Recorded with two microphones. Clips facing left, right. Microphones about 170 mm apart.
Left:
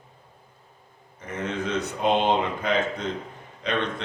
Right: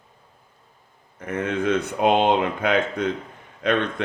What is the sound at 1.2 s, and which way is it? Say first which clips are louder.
Speech: right 5 dB; 55° right (ahead or behind).